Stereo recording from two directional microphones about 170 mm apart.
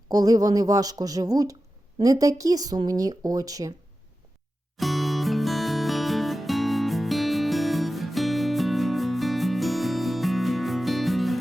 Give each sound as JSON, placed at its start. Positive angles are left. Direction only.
{"t": 0.1, "sound": "speech", "side_deg": -20}
{"t": 4.8, "sound": "music", "side_deg": 0}